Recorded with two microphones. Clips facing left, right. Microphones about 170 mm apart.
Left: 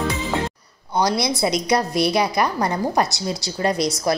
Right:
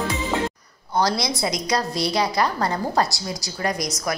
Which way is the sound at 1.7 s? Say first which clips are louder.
Left 3 dB; 20° left (ahead or behind).